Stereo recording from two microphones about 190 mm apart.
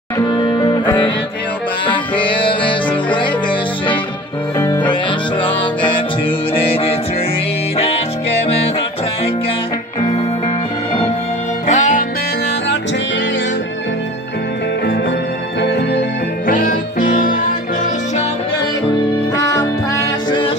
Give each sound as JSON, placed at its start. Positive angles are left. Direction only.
{"t": 0.2, "sound": "music", "side_deg": 25}
{"t": 4.6, "sound": "music", "side_deg": 15}
{"t": 11.6, "sound": "music", "side_deg": 40}
{"t": 16.4, "sound": "music", "side_deg": 45}
{"t": 20.0, "sound": "music", "side_deg": 25}